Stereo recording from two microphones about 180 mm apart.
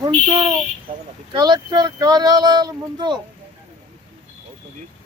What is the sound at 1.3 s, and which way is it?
Speech, 25° right (ahead or behind).